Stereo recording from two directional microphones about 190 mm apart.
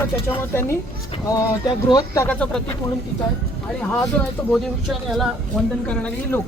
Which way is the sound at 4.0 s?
5° left (ahead or behind).